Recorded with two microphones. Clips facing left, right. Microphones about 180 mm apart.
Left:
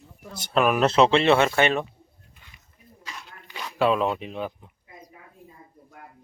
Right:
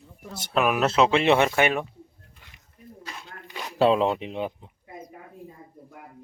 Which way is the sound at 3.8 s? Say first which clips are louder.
Right 2 dB; 25° right (ahead or behind).